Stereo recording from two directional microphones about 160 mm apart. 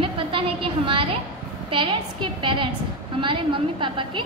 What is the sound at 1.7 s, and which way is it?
A woman's voice, 30° right (ahead or behind).